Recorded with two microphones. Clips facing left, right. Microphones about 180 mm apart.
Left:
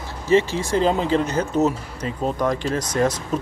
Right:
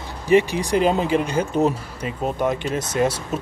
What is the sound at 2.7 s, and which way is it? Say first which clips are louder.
Speech: left 1 dB; 25° right (ahead or behind).